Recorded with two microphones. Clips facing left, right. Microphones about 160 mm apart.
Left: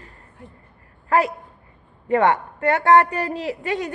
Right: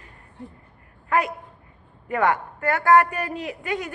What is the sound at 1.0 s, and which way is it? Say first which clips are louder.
A man's voice: left 4 dB; 30° left (ahead or behind).